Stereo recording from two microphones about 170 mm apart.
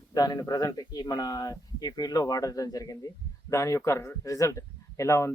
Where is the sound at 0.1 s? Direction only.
20° left (ahead or behind).